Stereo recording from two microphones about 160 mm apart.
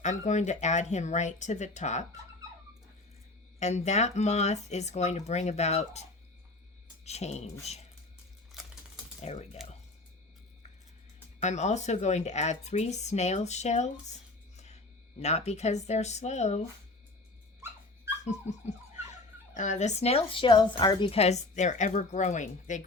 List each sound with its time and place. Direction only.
0.0 s a woman's voice: 50° left (ahead or behind)
3.6 s a woman's voice: 45° left (ahead or behind)
9.2 s a woman's voice: 40° left (ahead or behind)
11.3 s a woman's voice: 45° left (ahead or behind)
14.5 s a sound: 45° left (ahead or behind)
15.2 s a woman's voice: 45° left (ahead or behind)
18.2 s dog: 45° left (ahead or behind)
19.5 s a woman's voice: 50° left (ahead or behind)